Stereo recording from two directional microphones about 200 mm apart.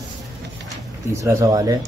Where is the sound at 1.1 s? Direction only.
15° right (ahead or behind).